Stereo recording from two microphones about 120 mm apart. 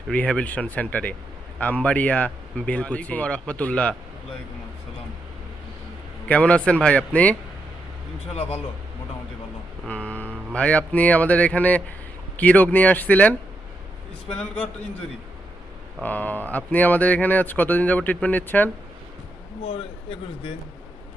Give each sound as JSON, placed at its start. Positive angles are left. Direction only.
{"t": 0.1, "sound": "speech", "side_deg": 10}
{"t": 6.2, "sound": "speech", "side_deg": 10}
{"t": 9.8, "sound": "speech", "side_deg": 10}
{"t": 16.0, "sound": "speech", "side_deg": 15}
{"t": 19.6, "sound": "a man's voice", "side_deg": 50}